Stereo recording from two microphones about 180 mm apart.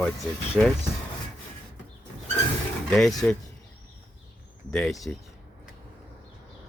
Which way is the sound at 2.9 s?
5° left (ahead or behind).